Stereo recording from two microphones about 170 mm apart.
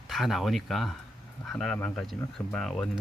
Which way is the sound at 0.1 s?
Centre (ahead or behind).